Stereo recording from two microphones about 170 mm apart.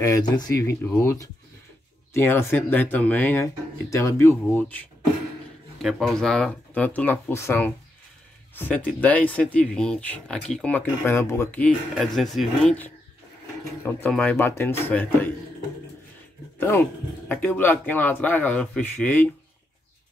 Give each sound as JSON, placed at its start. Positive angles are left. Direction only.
{"t": 0.0, "sound": "speech", "side_deg": 20}
{"t": 5.8, "sound": "speech", "side_deg": 0}
{"t": 16.5, "sound": "speech", "side_deg": 10}